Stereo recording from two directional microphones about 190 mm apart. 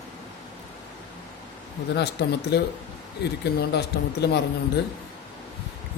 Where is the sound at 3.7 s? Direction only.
60° left (ahead or behind).